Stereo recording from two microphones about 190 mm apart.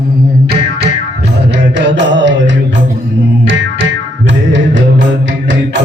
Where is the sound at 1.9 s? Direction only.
70° right (ahead or behind).